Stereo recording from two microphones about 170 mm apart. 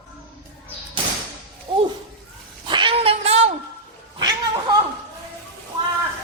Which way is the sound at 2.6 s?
30° right (ahead or behind).